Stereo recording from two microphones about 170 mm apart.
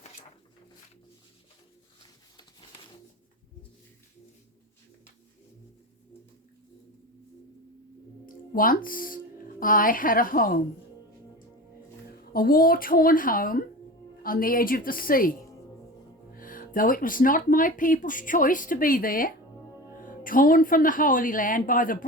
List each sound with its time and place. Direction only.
8.3 s speech: 55° left (ahead or behind)
12.3 s a woman's voice: 60° left (ahead or behind)